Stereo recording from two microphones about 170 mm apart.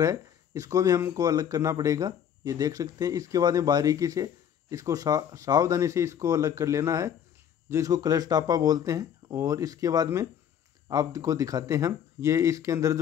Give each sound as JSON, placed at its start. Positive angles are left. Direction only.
{"t": 0.0, "sound": "speech", "side_deg": -20}